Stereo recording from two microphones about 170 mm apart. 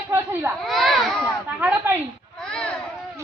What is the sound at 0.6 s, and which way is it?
Children playing, centre (ahead or behind).